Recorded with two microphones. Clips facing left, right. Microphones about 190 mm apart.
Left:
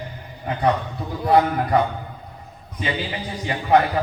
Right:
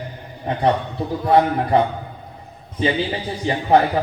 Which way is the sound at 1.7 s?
25° right (ahead or behind).